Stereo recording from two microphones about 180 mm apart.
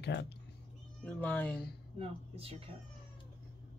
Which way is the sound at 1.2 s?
10° left (ahead or behind).